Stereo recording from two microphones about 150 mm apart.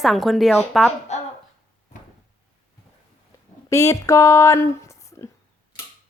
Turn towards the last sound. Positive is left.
turn(degrees=20)  # may be behind; listen again after turning